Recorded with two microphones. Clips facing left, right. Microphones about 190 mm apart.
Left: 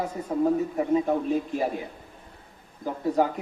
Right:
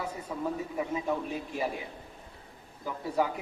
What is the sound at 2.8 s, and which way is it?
Speech, 45° left (ahead or behind).